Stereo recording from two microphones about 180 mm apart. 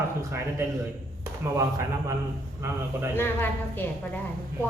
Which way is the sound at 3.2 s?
10° left (ahead or behind).